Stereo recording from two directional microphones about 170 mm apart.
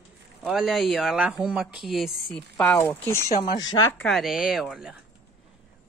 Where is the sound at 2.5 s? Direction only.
15° left (ahead or behind).